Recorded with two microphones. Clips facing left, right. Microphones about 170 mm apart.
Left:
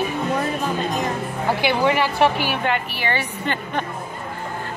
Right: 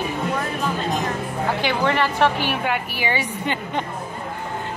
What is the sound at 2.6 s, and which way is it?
A woman's voice, 10° right (ahead or behind).